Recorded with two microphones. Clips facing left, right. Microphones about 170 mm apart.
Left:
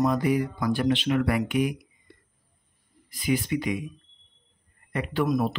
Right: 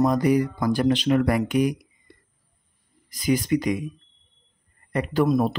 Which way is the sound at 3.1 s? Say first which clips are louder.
Right 4 dB; 40° right (ahead or behind).